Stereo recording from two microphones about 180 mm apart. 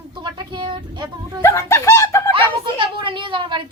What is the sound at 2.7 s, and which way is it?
Speech, 30° right (ahead or behind).